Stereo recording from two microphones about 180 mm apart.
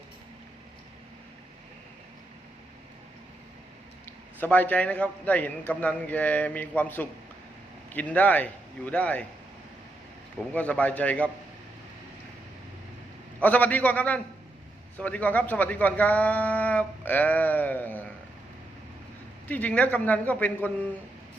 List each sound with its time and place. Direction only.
4.4 s speech: 10° left (ahead or behind)
10.3 s speech: 5° left (ahead or behind)
13.4 s speech: 10° left (ahead or behind)
19.5 s speech: 10° left (ahead or behind)